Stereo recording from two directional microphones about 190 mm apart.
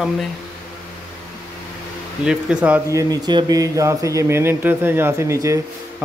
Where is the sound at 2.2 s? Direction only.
5° right (ahead or behind).